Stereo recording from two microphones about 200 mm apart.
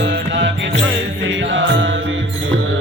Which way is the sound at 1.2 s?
65° right (ahead or behind).